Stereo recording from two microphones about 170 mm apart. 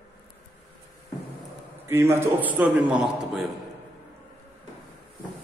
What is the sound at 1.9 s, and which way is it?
A man's voice, 15° right (ahead or behind).